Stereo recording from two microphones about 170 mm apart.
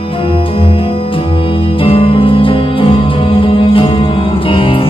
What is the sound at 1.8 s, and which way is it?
Music, 35° left (ahead or behind).